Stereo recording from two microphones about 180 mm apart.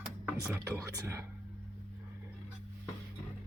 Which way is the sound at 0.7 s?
15° right (ahead or behind).